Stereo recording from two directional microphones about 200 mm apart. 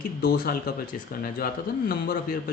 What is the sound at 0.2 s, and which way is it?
Speech, 50° left (ahead or behind).